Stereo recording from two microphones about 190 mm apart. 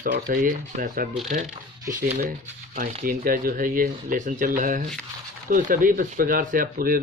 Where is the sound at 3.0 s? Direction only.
50° right (ahead or behind).